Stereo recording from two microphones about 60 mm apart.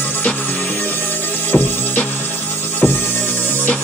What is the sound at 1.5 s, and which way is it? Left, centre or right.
Music, left.